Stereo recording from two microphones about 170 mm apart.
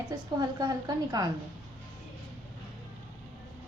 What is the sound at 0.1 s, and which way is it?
A woman's voice, 20° right (ahead or behind).